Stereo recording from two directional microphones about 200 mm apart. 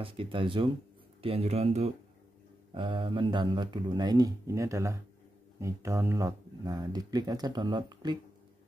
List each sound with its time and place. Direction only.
0.0 s speech: 25° right (ahead or behind)